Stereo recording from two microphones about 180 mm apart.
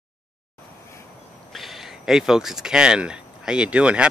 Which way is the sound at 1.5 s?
Centre (ahead or behind).